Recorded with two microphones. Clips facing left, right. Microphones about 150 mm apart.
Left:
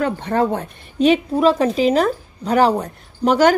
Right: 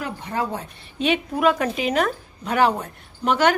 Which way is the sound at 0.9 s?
40° left (ahead or behind).